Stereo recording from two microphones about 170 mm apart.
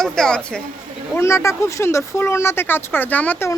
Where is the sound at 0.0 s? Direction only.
5° left (ahead or behind).